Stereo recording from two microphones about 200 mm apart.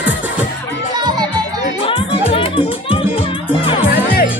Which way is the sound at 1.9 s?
25° left (ahead or behind).